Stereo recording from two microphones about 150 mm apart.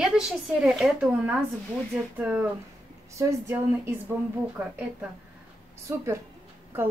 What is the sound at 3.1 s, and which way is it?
A woman's voice, 20° right (ahead or behind).